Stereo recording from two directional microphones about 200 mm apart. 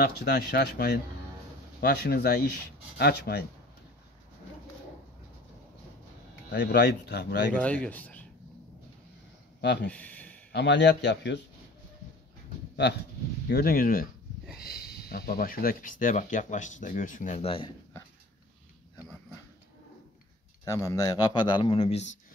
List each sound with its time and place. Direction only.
0.0 s speech: 50° left (ahead or behind)
6.5 s speech: 60° left (ahead or behind)
7.6 s speech: 5° left (ahead or behind)
9.8 s speech: 5° left (ahead or behind)
10.5 s speech: 60° left (ahead or behind)
13.5 s speech: 50° left (ahead or behind)
14.4 s a sound: centre (ahead or behind)
15.0 s speech: 50° left (ahead or behind); by 17.7 s 25° left (ahead or behind)
20.6 s a man's voice: 15° left (ahead or behind)